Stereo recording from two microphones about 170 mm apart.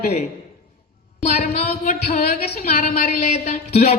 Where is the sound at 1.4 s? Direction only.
40° left (ahead or behind).